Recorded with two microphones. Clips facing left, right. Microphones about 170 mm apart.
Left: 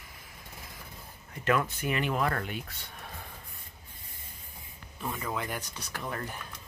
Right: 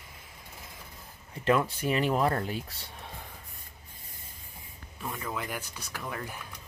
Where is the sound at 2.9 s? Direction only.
20° right (ahead or behind).